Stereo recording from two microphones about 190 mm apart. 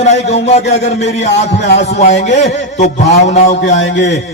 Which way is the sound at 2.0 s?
35° left (ahead or behind).